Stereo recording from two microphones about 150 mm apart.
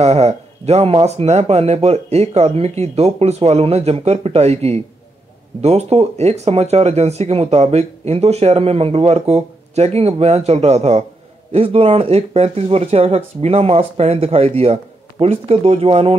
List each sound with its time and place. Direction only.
0.0 s speech: 45° right (ahead or behind)